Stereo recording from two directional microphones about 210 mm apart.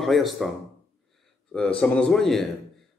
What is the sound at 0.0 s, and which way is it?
Speech, centre (ahead or behind).